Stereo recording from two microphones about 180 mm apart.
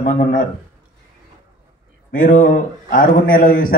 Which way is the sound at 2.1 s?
50° left (ahead or behind).